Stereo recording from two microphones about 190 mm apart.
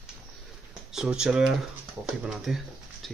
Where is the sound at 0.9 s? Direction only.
5° right (ahead or behind).